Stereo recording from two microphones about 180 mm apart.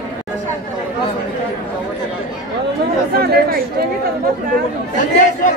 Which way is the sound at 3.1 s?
60° right (ahead or behind).